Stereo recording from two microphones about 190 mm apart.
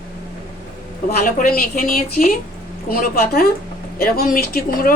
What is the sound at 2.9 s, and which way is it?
A woman's voice, 50° left (ahead or behind).